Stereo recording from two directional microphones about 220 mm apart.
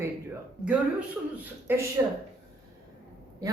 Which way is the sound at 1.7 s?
10° right (ahead or behind).